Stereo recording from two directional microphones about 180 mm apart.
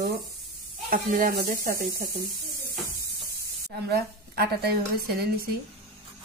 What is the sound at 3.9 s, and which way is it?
Speech, 60° right (ahead or behind).